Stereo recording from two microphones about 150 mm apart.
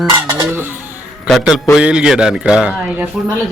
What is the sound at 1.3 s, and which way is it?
A man's voice, centre (ahead or behind).